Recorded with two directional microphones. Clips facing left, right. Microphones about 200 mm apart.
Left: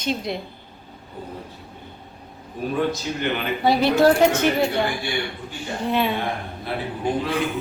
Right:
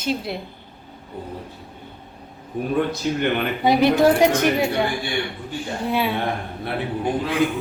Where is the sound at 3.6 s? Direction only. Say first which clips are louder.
Right 2 dB; 15° right (ahead or behind).